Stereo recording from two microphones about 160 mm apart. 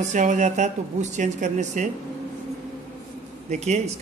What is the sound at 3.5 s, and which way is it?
Speech, 45° right (ahead or behind).